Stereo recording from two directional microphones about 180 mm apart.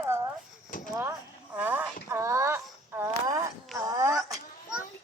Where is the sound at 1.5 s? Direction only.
10° right (ahead or behind).